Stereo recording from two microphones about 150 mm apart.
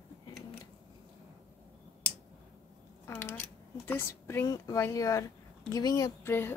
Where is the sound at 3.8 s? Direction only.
15° left (ahead or behind).